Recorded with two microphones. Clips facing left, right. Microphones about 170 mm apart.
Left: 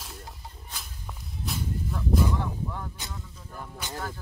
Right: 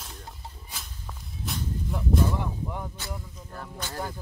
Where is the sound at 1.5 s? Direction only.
Centre (ahead or behind).